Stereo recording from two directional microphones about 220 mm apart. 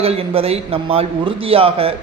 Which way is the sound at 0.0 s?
25° right (ahead or behind).